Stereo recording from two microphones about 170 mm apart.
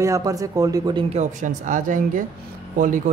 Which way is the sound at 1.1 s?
45° right (ahead or behind).